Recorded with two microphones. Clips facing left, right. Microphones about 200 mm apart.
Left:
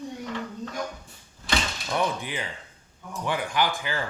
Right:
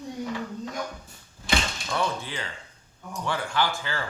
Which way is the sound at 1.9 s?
15° left (ahead or behind).